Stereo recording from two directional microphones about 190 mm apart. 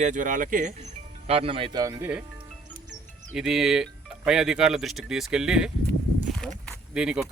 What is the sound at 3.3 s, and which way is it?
Speech, centre (ahead or behind).